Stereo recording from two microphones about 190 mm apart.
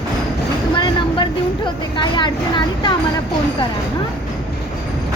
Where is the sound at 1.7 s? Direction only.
25° left (ahead or behind).